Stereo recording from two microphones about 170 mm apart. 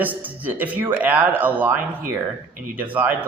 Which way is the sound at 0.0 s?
10° right (ahead or behind).